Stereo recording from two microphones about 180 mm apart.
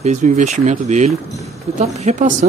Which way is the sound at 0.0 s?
40° right (ahead or behind).